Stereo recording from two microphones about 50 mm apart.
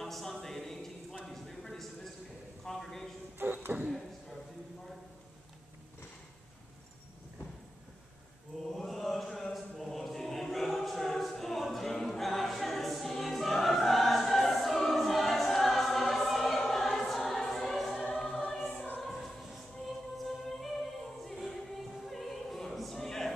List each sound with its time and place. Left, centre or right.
0.0 s a sound: centre
3.4 s a sound: right
8.7 s chant: centre
18.1 s choir: centre
18.9 s music: centre
22.0 s opera: centre